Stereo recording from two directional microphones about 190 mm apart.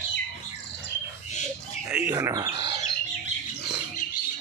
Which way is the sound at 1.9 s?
10° right (ahead or behind).